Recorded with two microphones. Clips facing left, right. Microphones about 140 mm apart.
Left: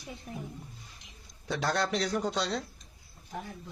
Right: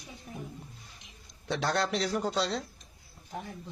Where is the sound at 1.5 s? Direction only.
Centre (ahead or behind).